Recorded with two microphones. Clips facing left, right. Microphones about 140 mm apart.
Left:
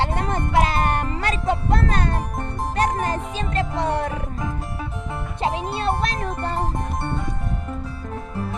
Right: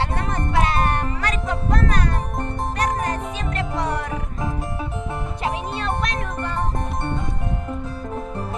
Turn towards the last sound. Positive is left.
turn(degrees=35)  # may be behind; listen again after turning